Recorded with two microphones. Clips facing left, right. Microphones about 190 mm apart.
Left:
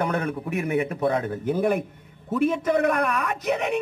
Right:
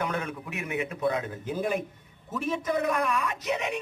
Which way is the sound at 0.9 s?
60° left (ahead or behind).